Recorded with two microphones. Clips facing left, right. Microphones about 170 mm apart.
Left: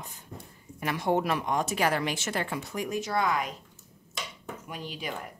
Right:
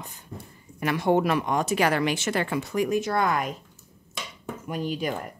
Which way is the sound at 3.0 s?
55° right (ahead or behind).